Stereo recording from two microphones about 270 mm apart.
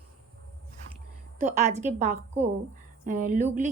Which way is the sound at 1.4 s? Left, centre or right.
Right.